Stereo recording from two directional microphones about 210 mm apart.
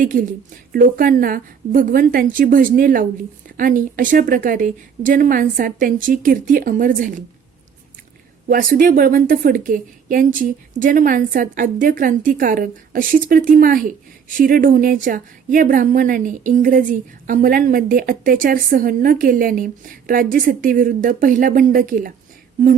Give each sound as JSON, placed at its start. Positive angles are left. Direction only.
{"t": 0.0, "sound": "a woman's voice", "side_deg": -40}
{"t": 8.4, "sound": "a woman's voice", "side_deg": -40}